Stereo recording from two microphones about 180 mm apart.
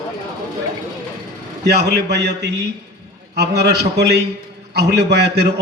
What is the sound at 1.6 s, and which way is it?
A man's voice, 65° right (ahead or behind).